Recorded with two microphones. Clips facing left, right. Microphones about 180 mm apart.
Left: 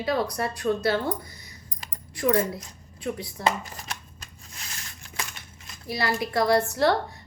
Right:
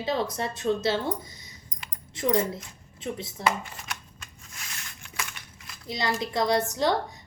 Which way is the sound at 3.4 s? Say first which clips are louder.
Left 1 dB; 35° left (ahead or behind).